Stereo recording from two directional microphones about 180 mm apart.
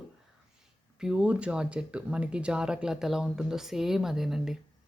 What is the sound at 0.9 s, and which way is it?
Speech, 5° right (ahead or behind).